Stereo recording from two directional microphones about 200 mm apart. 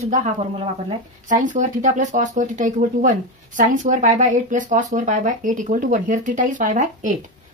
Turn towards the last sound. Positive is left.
turn(degrees=-40)  # may be behind; listen again after turning